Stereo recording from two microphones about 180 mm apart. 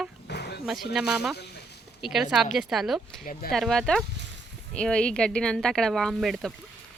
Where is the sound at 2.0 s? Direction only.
Centre (ahead or behind).